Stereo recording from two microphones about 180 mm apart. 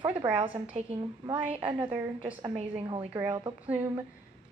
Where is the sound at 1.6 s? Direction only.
10° right (ahead or behind).